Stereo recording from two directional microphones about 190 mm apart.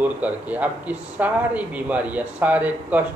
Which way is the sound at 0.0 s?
10° right (ahead or behind).